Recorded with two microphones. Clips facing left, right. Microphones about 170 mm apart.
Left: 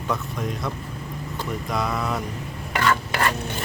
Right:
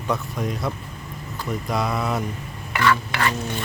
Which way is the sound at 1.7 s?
5° right (ahead or behind).